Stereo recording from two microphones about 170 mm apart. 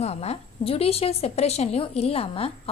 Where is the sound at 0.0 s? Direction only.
40° left (ahead or behind).